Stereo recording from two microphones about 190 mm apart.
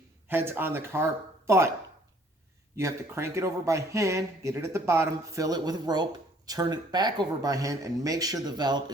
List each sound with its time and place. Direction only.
0.3 s speech: 10° right (ahead or behind)
2.7 s speech: 15° right (ahead or behind)